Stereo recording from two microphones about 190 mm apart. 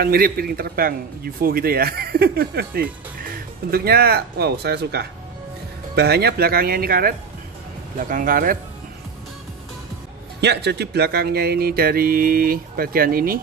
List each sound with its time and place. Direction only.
0.0 s speech: 50° right (ahead or behind)
10.4 s speech: 65° right (ahead or behind)